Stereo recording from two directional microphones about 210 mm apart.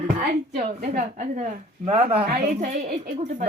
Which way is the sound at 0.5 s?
40° right (ahead or behind).